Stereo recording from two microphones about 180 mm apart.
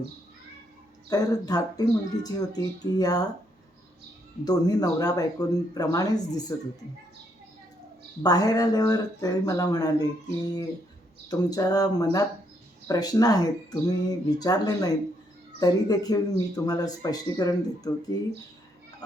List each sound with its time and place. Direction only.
1.1 s speech: 20° left (ahead or behind)
4.4 s speech: 20° left (ahead or behind)
8.2 s speech: 20° left (ahead or behind)